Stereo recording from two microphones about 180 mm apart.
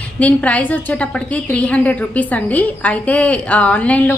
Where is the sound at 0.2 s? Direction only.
5° left (ahead or behind).